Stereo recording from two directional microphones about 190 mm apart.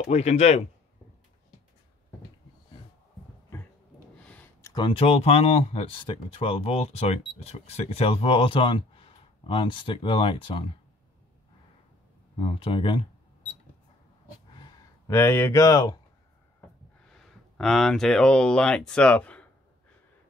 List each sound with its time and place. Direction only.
0.1 s speech: 35° left (ahead or behind)
4.2 s a sound: 10° left (ahead or behind)
4.8 s speech: 30° left (ahead or behind)
12.4 s speech: 30° left (ahead or behind)
15.0 s speech: 15° left (ahead or behind)
17.1 s speech: centre (ahead or behind)